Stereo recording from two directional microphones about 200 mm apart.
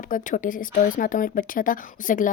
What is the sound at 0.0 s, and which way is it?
Speech, 40° left (ahead or behind).